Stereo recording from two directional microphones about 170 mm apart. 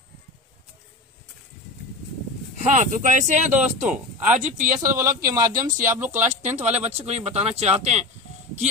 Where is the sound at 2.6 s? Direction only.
50° right (ahead or behind).